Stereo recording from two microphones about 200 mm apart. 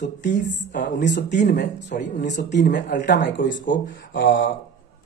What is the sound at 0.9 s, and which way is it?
Speech, 60° left (ahead or behind).